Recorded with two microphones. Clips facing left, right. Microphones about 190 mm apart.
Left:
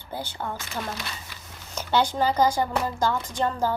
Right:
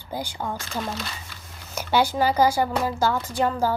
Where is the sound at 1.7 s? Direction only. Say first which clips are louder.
Right 2 dB; 10° right (ahead or behind).